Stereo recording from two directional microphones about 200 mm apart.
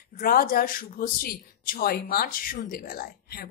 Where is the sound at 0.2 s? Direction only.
45° left (ahead or behind).